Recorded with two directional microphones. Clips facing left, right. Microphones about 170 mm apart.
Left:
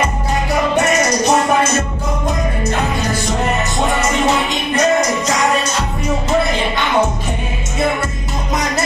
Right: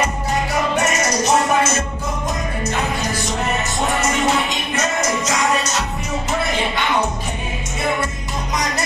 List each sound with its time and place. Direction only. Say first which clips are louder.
4.7 s music: left 7 dB; 30° left (ahead or behind)